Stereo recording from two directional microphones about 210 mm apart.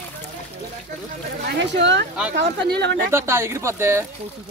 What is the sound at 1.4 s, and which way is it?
Speech, 55° right (ahead or behind).